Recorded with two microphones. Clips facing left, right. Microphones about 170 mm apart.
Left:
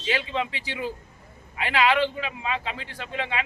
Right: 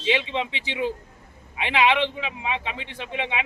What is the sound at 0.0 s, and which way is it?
A man's voice, 20° right (ahead or behind).